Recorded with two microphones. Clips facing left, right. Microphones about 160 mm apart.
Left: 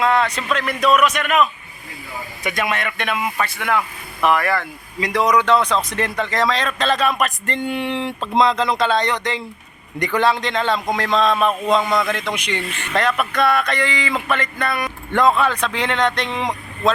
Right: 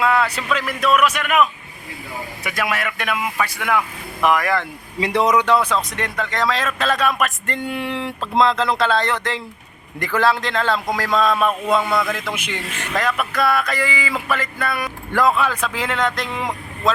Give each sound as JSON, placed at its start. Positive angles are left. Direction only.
{"t": 0.0, "sound": "speech", "side_deg": -10}
{"t": 4.9, "sound": "speech", "side_deg": -30}
{"t": 5.5, "sound": "speech", "side_deg": -5}
{"t": 11.3, "sound": "a sound", "side_deg": 20}
{"t": 11.9, "sound": "speech", "side_deg": -5}